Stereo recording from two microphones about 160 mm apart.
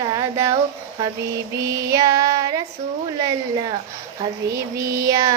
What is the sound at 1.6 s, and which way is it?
Child singing, 20° right (ahead or behind).